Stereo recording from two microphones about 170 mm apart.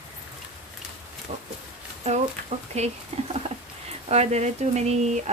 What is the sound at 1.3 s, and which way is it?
Speech, 35° right (ahead or behind).